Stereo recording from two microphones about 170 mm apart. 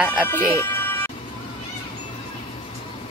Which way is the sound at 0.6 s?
10° left (ahead or behind).